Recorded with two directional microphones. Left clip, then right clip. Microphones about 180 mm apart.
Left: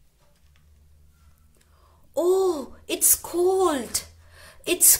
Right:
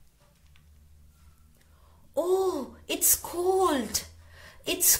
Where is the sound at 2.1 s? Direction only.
15° left (ahead or behind).